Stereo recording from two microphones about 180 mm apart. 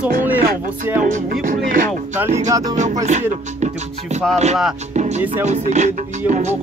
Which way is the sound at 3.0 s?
40° right (ahead or behind).